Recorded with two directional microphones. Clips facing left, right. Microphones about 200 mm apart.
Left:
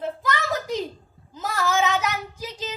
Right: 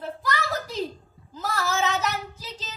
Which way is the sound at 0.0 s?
20° left (ahead or behind).